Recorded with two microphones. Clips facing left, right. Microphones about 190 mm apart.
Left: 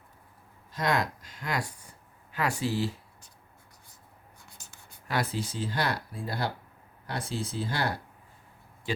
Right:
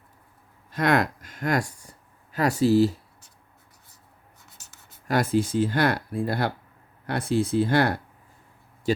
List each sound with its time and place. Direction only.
0.7 s speech: 60° right (ahead or behind); by 2.9 s 40° right (ahead or behind)
4.4 s writing: centre (ahead or behind)
5.0 s speech: 45° right (ahead or behind)